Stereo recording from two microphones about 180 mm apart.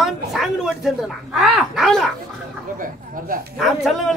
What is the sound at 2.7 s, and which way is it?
Speech, 50° right (ahead or behind).